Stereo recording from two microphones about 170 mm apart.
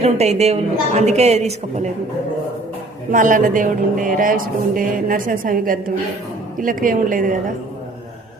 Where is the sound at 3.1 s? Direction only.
50° right (ahead or behind).